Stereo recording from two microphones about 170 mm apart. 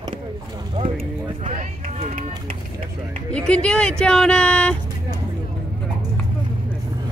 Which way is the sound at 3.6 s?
5° left (ahead or behind).